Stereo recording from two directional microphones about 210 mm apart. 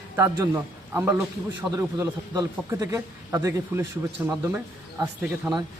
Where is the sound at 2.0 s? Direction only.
15° right (ahead or behind).